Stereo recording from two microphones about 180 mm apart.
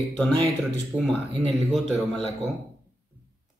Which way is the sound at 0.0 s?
Centre (ahead or behind).